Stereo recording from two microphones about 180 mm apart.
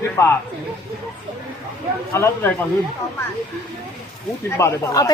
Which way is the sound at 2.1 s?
15° left (ahead or behind).